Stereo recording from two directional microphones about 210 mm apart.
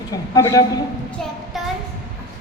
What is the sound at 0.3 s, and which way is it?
Speech, 15° left (ahead or behind).